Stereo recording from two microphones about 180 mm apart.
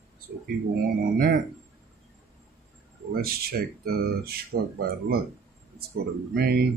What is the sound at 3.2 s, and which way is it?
Speech, 60° right (ahead or behind).